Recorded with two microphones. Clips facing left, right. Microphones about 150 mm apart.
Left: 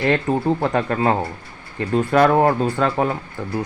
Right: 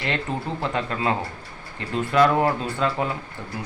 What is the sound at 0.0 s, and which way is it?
Speech, 50° left (ahead or behind).